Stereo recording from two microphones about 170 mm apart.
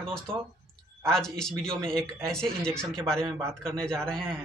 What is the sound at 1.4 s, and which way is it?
Speech, 5° left (ahead or behind).